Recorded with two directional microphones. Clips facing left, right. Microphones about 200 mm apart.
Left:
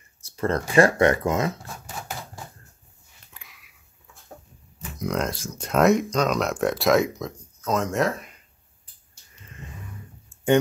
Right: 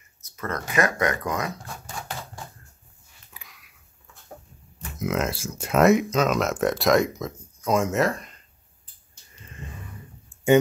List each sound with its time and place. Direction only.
0.2 s speech: 30° left (ahead or behind)
3.3 s a sound: centre (ahead or behind)
4.9 s speech: 5° right (ahead or behind)
10.3 s clicking: 15° right (ahead or behind)